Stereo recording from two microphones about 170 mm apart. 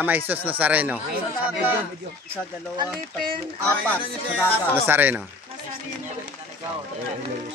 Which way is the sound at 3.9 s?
10° left (ahead or behind).